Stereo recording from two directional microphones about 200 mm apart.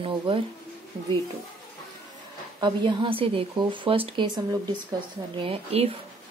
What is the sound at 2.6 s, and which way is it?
A woman's voice, 25° right (ahead or behind).